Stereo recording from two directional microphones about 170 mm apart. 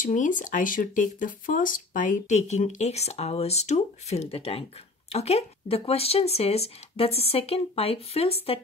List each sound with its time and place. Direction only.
0.0 s speech: 50° left (ahead or behind)